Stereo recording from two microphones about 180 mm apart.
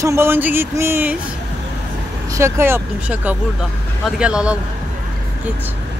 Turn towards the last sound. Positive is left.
turn(degrees=-5)  # may be behind; listen again after turning